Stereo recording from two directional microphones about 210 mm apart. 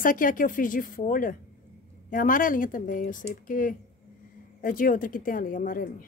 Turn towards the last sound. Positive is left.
turn(degrees=40)  # may be behind; listen again after turning